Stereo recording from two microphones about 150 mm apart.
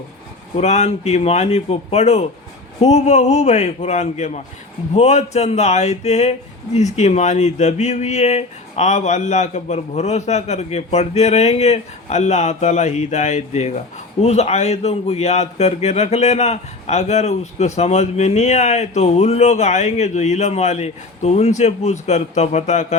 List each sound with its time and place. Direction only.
0.6 s a man's voice: 50° left (ahead or behind)